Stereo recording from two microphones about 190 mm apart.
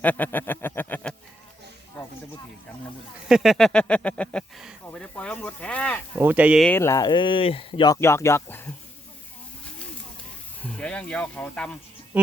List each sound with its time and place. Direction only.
0.0 s a sound: 10° left (ahead or behind)
3.2 s a sound: centre (ahead or behind)
4.9 s snake: 5° left (ahead or behind)
6.1 s speech: 10° right (ahead or behind)
6.7 s speech: 15° left (ahead or behind)
10.8 s speech: 5° left (ahead or behind)
12.1 s speech: 10° right (ahead or behind)